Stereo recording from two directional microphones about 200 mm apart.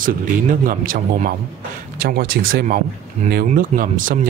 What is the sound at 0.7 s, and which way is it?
A man's voice, 45° right (ahead or behind).